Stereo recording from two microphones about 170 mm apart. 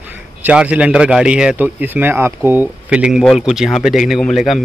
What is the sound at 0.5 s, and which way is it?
Speech, 5° right (ahead or behind).